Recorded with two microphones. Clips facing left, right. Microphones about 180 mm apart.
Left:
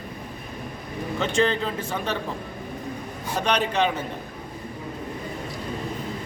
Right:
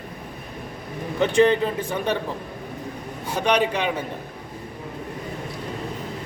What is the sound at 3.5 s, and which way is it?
Speech, 10° right (ahead or behind).